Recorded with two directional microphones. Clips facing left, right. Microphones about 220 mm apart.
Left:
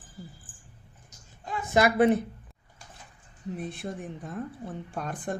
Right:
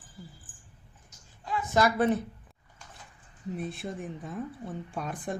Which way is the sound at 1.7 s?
15° left (ahead or behind).